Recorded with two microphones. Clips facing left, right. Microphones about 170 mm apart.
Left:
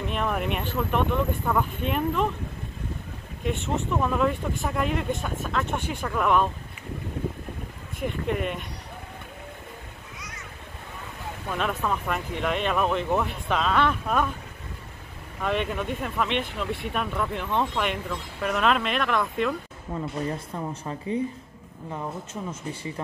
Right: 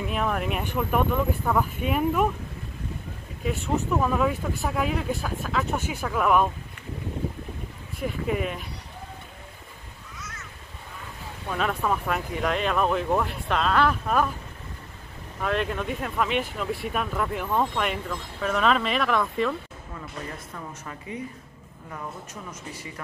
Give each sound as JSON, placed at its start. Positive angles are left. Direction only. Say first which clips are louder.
{"t": 0.0, "sound": "speech", "louder": "even", "side_deg": -5}
{"t": 3.4, "sound": "speech", "louder": "right 1 dB", "side_deg": 0}
{"t": 8.0, "sound": "speech", "louder": "even", "side_deg": -5}
{"t": 11.5, "sound": "speech", "louder": "right 2 dB", "side_deg": 0}
{"t": 15.4, "sound": "speech", "louder": "even", "side_deg": 0}
{"t": 19.9, "sound": "speech", "louder": "left 8 dB", "side_deg": 30}